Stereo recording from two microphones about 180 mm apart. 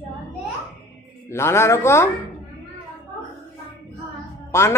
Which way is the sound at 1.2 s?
15° left (ahead or behind).